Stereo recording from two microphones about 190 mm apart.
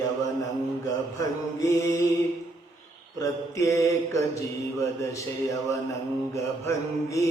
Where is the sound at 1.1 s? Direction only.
15° left (ahead or behind).